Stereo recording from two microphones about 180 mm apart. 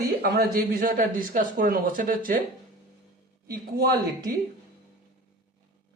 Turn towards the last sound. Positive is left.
turn(degrees=-60)  # may be behind; listen again after turning